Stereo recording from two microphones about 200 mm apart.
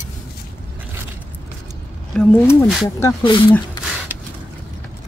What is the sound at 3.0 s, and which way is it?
Speech, 20° left (ahead or behind).